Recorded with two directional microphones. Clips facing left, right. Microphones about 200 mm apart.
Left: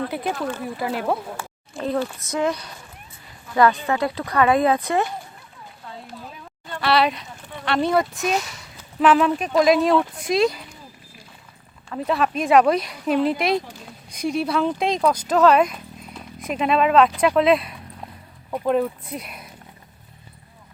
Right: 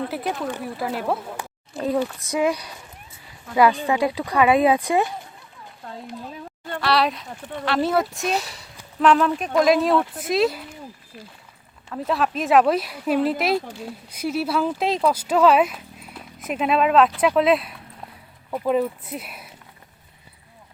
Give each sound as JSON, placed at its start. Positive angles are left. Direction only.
{"t": 0.1, "sound": "speech", "side_deg": -5}
{"t": 2.1, "sound": "speech", "side_deg": -10}
{"t": 5.8, "sound": "a sound", "side_deg": -45}
{"t": 6.8, "sound": "speech", "side_deg": 0}
{"t": 8.4, "sound": "speech", "side_deg": -35}
{"t": 9.0, "sound": "speech", "side_deg": 5}
{"t": 11.9, "sound": "speech", "side_deg": 0}